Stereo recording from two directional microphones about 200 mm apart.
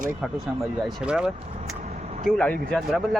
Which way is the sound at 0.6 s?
5° right (ahead or behind).